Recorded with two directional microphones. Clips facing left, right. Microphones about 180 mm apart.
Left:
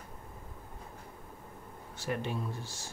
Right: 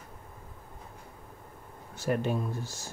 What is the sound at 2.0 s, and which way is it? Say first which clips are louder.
Speech: right 6 dB; 45° right (ahead or behind).